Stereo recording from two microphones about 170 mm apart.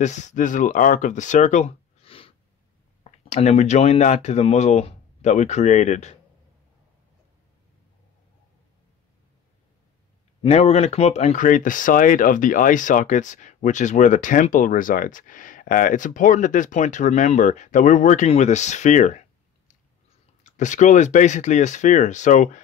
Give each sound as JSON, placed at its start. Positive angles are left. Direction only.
{"t": 0.0, "sound": "speech", "side_deg": 45}
{"t": 10.4, "sound": "speech", "side_deg": 40}
{"t": 20.4, "sound": "speech", "side_deg": 45}